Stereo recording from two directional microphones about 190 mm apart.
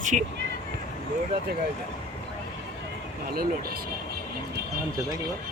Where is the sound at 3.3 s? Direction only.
50° right (ahead or behind).